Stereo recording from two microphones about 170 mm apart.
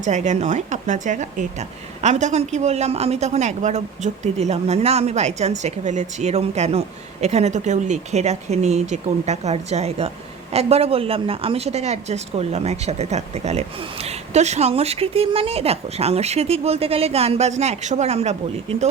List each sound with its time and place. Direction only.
0.0 s speech: 45° right (ahead or behind)